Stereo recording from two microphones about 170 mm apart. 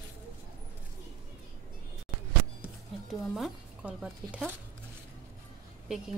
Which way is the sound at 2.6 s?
Centre (ahead or behind).